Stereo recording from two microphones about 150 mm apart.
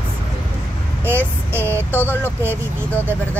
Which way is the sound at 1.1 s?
15° right (ahead or behind).